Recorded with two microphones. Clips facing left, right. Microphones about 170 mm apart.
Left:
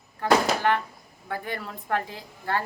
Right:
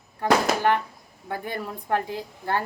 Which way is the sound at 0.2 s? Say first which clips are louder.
Right 1 dB; 15° right (ahead or behind).